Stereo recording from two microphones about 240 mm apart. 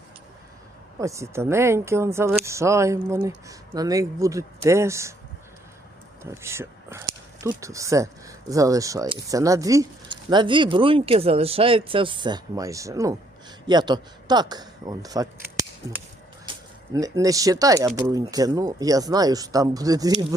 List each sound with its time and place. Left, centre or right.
0.9 s speech: centre
6.2 s speech: centre
16.5 s speech: centre